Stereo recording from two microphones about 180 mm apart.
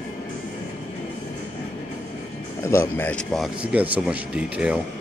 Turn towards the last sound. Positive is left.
turn(degrees=-5)  # may be behind; listen again after turning